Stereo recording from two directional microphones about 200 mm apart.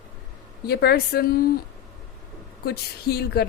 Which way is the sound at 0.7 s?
55° left (ahead or behind).